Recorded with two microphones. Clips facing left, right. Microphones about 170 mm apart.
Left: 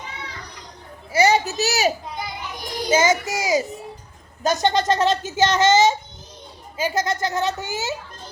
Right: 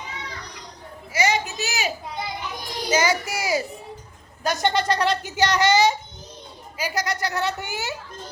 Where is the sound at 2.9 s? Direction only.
20° left (ahead or behind).